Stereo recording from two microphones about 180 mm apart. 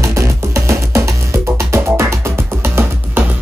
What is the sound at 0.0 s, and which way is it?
Music, 15° right (ahead or behind).